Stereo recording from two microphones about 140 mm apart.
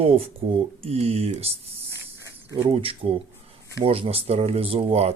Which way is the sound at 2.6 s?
40° right (ahead or behind).